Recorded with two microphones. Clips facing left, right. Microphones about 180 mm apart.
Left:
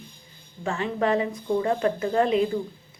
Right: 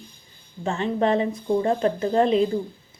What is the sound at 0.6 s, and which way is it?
Speech, 25° right (ahead or behind).